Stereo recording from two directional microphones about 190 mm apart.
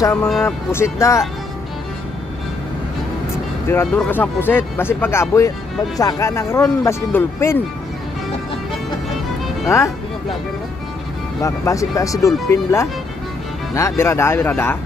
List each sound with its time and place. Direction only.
0.0 s speech: 15° left (ahead or behind)
3.6 s speech: 10° left (ahead or behind)
9.7 s speech: 15° left (ahead or behind)
11.4 s speech: 15° left (ahead or behind)